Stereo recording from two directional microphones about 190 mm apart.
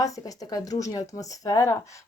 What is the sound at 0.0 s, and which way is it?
Speech, 20° left (ahead or behind).